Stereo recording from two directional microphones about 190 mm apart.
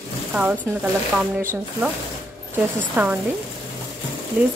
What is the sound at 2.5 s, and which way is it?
Speech, 10° right (ahead or behind).